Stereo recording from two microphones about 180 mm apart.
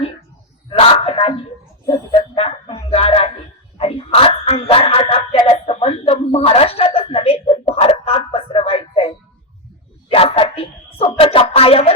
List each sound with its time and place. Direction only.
0.7 s wail: 30° left (ahead or behind)
1.9 s dog: 30° left (ahead or behind)
2.9 s a sound: 35° left (ahead or behind)